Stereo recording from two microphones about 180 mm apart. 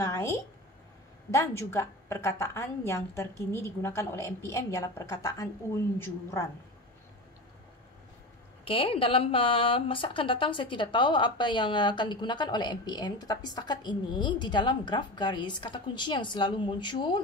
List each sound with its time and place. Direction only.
0.0 s a sound: 15° left (ahead or behind)
1.3 s a woman's voice: 15° left (ahead or behind)
8.6 s a woman's voice: 30° left (ahead or behind)